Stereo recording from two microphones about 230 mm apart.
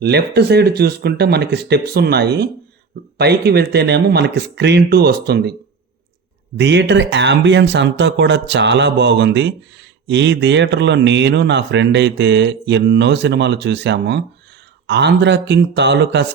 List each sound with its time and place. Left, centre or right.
0.0 s speech: right
6.6 s speech: right